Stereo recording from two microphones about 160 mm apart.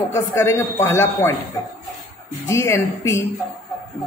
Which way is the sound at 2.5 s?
15° left (ahead or behind).